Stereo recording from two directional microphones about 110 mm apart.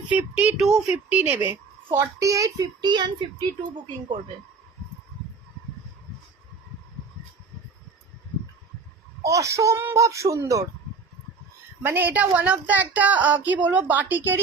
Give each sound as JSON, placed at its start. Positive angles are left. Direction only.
{"t": 0.1, "sound": "a woman's voice", "side_deg": -15}
{"t": 2.8, "sound": "speech", "side_deg": -45}
{"t": 9.2, "sound": "a woman's voice", "side_deg": -30}
{"t": 11.8, "sound": "a woman's voice", "side_deg": -20}